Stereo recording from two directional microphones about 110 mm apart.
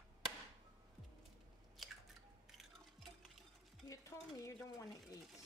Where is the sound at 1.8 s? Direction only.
Centre (ahead or behind).